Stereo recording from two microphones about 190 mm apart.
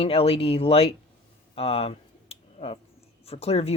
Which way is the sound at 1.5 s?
30° left (ahead or behind).